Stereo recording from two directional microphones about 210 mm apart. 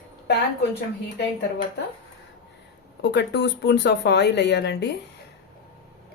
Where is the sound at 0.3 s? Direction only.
55° left (ahead or behind).